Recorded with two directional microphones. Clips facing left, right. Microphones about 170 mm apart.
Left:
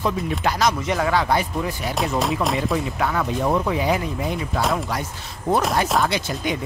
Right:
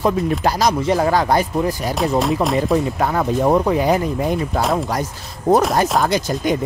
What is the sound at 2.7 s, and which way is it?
Speech, 40° right (ahead or behind).